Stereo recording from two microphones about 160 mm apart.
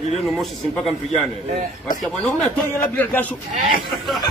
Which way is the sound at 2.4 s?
10° left (ahead or behind).